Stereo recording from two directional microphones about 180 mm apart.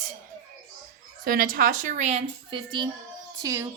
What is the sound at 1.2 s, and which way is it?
Speech, 50° right (ahead or behind).